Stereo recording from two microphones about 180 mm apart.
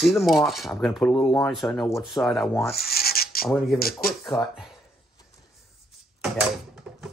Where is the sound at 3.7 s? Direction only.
55° left (ahead or behind).